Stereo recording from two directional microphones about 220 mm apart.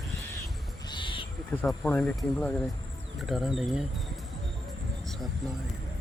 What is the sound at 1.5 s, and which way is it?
Speech, 5° left (ahead or behind).